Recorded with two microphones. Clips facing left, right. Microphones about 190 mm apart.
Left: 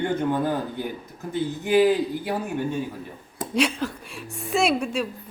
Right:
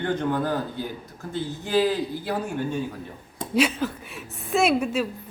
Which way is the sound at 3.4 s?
5° right (ahead or behind).